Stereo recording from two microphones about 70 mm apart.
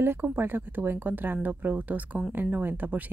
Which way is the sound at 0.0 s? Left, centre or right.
Right.